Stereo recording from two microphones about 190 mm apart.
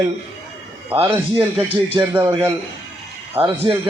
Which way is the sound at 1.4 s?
30° right (ahead or behind).